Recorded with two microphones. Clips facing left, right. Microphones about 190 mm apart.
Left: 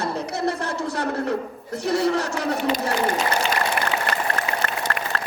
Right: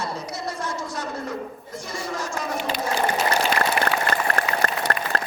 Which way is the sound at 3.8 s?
55° left (ahead or behind).